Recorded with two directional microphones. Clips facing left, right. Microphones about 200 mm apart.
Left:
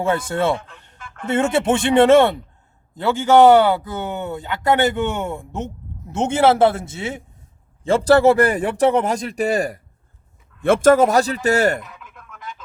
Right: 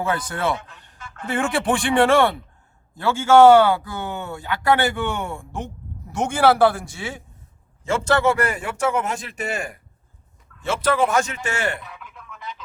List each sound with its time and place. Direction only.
0.0 s speech: 25° left (ahead or behind)
7.9 s a man's voice: 35° left (ahead or behind)
10.6 s speech: 50° left (ahead or behind)